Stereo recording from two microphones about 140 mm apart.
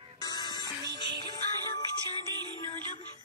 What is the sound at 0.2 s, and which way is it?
Music, 30° left (ahead or behind).